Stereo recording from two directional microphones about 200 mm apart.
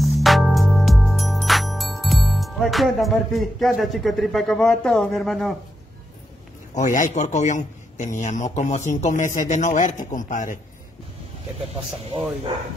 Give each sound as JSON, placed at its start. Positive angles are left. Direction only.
{"t": 0.0, "sound": "music", "side_deg": 0}
{"t": 6.7, "sound": "a man's voice", "side_deg": 40}